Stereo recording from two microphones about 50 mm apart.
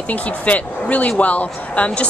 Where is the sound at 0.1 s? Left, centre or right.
Left.